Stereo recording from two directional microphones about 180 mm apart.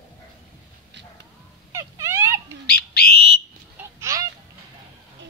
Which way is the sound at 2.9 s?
60° left (ahead or behind).